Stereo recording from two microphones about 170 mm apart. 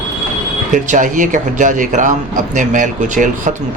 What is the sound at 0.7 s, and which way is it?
A man's voice, 50° right (ahead or behind).